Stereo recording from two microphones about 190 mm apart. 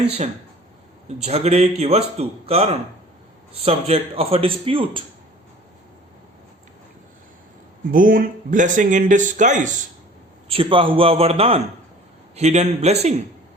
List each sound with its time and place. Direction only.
1.0 s speech: 35° right (ahead or behind)
7.9 s speech: 45° right (ahead or behind)
10.5 s a man's voice: 30° right (ahead or behind)